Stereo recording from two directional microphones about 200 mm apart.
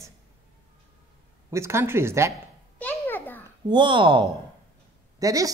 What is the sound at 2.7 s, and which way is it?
Babbling, 10° left (ahead or behind).